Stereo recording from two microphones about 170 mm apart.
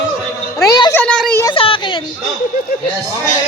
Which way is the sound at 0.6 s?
20° left (ahead or behind).